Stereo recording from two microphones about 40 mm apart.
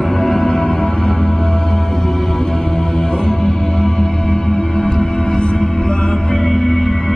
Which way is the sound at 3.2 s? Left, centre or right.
Centre.